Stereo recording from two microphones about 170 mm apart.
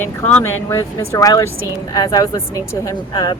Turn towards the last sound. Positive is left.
turn(degrees=25)  # may be behind; listen again after turning